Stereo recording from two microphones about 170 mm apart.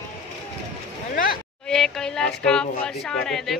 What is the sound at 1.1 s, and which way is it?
Speech, 55° left (ahead or behind).